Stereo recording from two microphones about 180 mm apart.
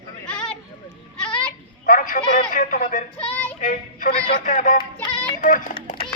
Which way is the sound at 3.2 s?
5° left (ahead or behind).